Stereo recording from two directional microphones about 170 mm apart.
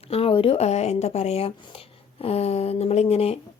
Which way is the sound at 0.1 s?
35° left (ahead or behind).